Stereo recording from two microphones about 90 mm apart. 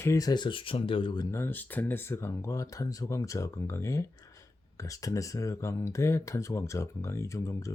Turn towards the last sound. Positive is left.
turn(degrees=35)  # may be behind; listen again after turning